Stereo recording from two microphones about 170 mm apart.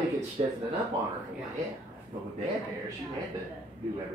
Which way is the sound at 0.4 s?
35° right (ahead or behind).